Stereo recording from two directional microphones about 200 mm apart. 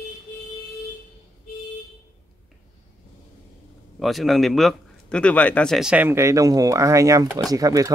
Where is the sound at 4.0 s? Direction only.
Centre (ahead or behind).